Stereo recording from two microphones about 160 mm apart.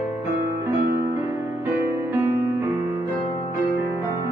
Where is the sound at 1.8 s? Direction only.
15° right (ahead or behind).